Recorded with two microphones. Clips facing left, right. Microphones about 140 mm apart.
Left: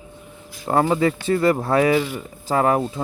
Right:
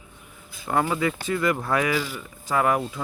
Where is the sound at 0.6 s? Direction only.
35° left (ahead or behind).